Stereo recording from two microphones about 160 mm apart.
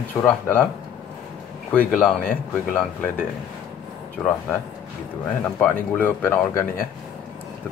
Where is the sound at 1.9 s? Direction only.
5° left (ahead or behind).